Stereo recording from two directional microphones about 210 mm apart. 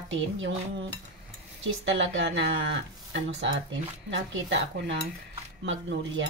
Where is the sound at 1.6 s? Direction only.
60° right (ahead or behind).